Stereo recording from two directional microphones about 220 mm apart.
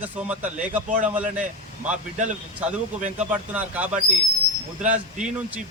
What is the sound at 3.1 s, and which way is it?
Speech, 5° right (ahead or behind).